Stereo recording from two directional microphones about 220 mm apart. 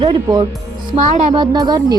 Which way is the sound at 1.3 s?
20° right (ahead or behind).